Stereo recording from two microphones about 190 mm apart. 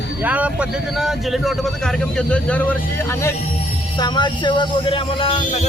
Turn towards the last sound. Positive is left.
turn(degrees=30)  # may be behind; listen again after turning